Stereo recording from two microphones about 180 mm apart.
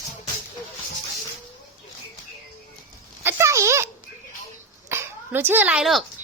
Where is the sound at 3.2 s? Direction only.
15° right (ahead or behind).